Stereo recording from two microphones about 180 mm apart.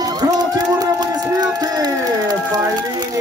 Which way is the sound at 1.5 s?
20° right (ahead or behind).